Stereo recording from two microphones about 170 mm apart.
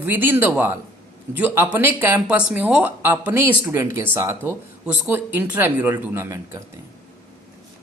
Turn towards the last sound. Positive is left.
turn(degrees=-15)  # may be behind; listen again after turning